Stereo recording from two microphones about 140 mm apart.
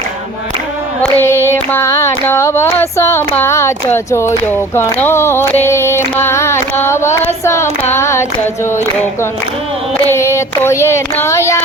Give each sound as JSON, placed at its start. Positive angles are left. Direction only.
{"t": 1.0, "sound": "child singing", "side_deg": 15}
{"t": 6.1, "sound": "a sound", "side_deg": 20}
{"t": 7.4, "sound": "child singing", "side_deg": 20}
{"t": 10.1, "sound": "child singing", "side_deg": 20}